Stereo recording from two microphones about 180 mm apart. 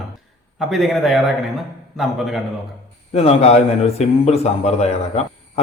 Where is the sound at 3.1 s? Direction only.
35° left (ahead or behind).